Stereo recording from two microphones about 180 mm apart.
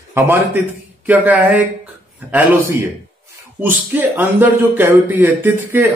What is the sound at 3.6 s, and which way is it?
A man's voice, 10° right (ahead or behind).